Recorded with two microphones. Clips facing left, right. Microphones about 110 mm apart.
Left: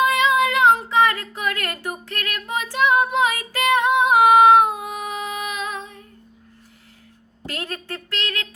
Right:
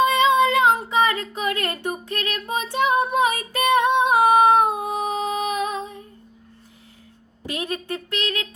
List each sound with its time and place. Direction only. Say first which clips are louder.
0.0 s child singing: right 1 dB; 25° right (ahead or behind)
3.3 s female singing: right 1 dB; 25° right (ahead or behind)
7.4 s a sound: right 3 dB; 15° right (ahead or behind)